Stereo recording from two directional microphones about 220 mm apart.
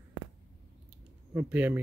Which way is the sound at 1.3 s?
5° right (ahead or behind).